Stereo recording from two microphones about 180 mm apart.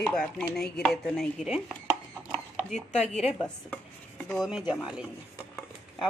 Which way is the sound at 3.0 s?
35° left (ahead or behind).